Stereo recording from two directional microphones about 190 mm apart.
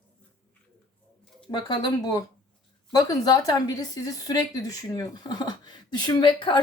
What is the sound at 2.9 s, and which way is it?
A woman's voice, 20° left (ahead or behind).